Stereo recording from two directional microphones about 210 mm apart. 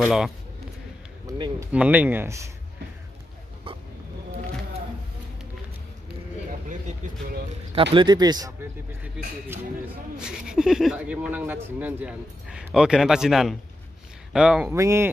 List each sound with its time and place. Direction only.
0.0 s speech: centre (ahead or behind)
1.2 s speech: 15° right (ahead or behind)
1.7 s speech: 5° right (ahead or behind)
7.7 s speech: 25° right (ahead or behind)